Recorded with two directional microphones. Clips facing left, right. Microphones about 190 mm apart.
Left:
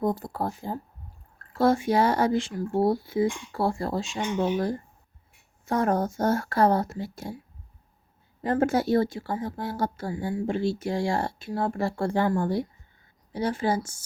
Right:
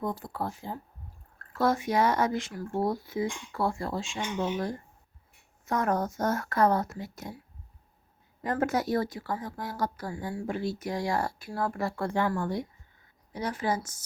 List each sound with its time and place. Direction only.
0.0 s speech: 40° left (ahead or behind)
1.5 s speech: 30° left (ahead or behind)
8.4 s speech: 30° left (ahead or behind)